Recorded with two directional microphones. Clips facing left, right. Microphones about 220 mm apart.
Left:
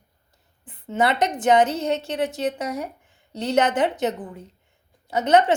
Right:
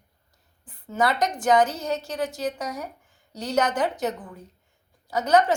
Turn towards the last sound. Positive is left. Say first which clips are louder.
# left 2 dB
turn(degrees=25)  # may be behind; listen again after turning